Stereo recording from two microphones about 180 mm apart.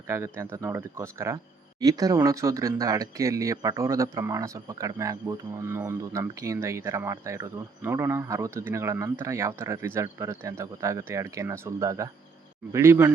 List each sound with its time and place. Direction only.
0.1 s speech: 15° right (ahead or behind)